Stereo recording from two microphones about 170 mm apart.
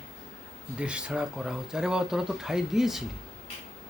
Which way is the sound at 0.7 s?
5° right (ahead or behind).